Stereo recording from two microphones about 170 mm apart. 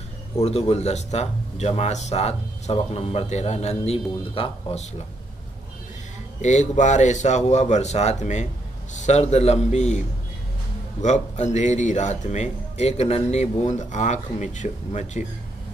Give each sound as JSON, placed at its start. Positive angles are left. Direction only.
{"t": 0.4, "sound": "speech", "side_deg": 40}
{"t": 6.4, "sound": "speech", "side_deg": 45}